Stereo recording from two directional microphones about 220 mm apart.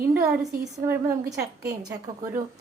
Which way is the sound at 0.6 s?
10° right (ahead or behind).